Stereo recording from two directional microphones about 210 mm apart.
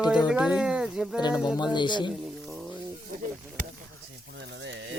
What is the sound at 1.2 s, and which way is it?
Speech, 20° left (ahead or behind).